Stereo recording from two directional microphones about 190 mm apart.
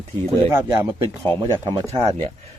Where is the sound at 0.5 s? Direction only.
15° right (ahead or behind).